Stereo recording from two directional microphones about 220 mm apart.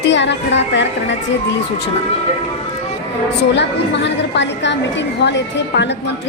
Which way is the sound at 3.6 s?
50° left (ahead or behind).